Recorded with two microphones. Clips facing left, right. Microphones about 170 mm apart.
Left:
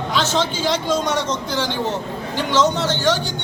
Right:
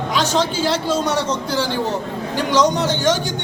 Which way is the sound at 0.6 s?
5° right (ahead or behind).